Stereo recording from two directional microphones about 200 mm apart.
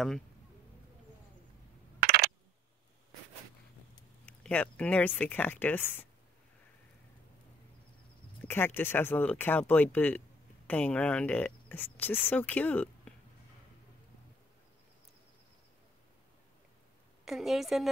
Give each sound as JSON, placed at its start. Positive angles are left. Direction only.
{"t": 4.3, "sound": "speech", "side_deg": 5}
{"t": 8.5, "sound": "speech", "side_deg": 10}
{"t": 17.2, "sound": "a woman's voice", "side_deg": 0}